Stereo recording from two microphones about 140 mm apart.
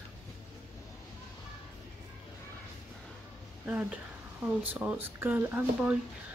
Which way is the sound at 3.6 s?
10° right (ahead or behind).